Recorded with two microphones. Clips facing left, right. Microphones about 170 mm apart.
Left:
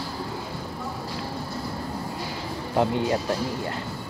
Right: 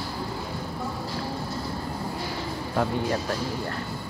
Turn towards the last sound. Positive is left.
turn(degrees=20)  # may be behind; listen again after turning